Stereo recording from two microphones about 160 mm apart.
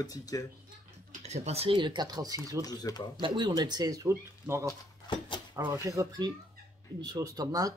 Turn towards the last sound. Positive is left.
turn(degrees=-20)  # may be behind; listen again after turning